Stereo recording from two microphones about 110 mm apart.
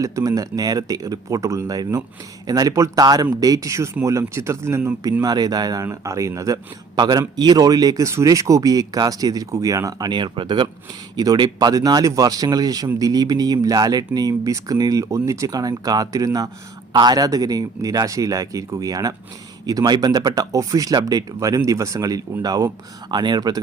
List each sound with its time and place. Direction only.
0.0 s a man's voice: 30° right (ahead or behind)
5.2 s a man's voice: 35° right (ahead or behind)
6.9 s a man's voice: 40° right (ahead or behind)